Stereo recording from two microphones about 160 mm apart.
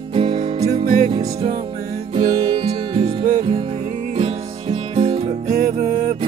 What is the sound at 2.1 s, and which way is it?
Music, 35° right (ahead or behind).